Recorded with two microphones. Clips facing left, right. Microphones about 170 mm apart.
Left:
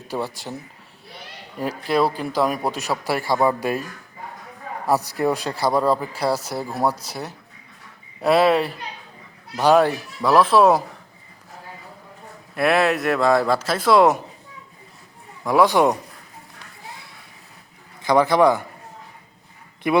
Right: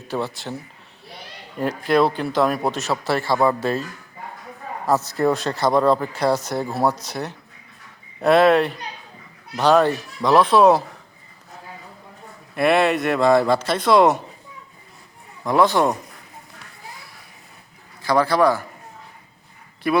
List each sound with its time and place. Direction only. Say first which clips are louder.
0.1 s a man's voice: right 1 dB; 10° left (ahead or behind)
1.5 s a man's voice: right 3 dB; 5° left (ahead or behind)
4.9 s a man's voice: right 1 dB; 15° left (ahead or behind)
12.5 s speech: right 1 dB; centre (ahead or behind)
15.4 s a man's voice: left 1 dB; 10° left (ahead or behind)
18.0 s a man's voice: left 1 dB; 20° left (ahead or behind)
19.9 s a man's voice: left 1 dB; 20° left (ahead or behind)